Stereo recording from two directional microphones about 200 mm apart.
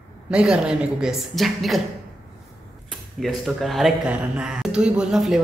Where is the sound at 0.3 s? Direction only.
5° right (ahead or behind).